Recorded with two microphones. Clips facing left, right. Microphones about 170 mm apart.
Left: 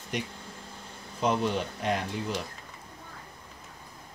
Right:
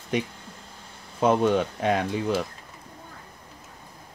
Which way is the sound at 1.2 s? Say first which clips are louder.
Right 7 dB; 55° right (ahead or behind).